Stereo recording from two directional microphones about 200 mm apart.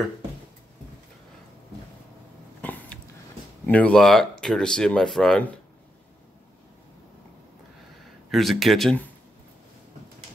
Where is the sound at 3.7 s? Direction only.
5° left (ahead or behind).